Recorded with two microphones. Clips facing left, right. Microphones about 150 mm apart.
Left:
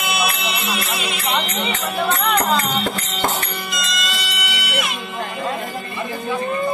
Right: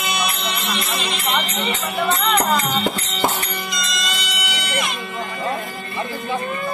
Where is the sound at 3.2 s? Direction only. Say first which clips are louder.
Left 1 dB; 10° right (ahead or behind).